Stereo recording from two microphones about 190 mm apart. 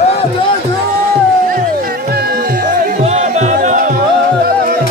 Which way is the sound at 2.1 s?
55° right (ahead or behind).